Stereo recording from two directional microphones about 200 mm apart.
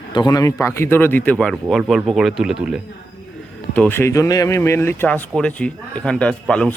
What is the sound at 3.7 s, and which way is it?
A man's voice, 10° left (ahead or behind).